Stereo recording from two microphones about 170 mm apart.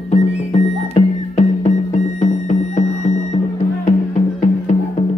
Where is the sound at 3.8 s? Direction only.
45° left (ahead or behind).